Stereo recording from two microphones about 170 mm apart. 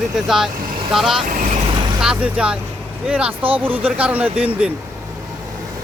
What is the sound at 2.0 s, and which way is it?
Speech, 5° right (ahead or behind).